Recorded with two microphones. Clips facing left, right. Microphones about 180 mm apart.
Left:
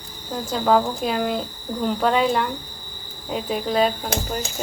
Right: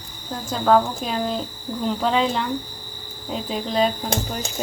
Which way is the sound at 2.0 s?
5° left (ahead or behind).